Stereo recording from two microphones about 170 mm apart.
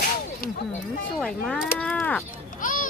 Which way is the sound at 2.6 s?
50° left (ahead or behind).